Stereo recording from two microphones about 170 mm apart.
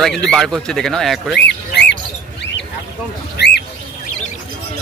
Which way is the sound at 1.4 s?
90° left.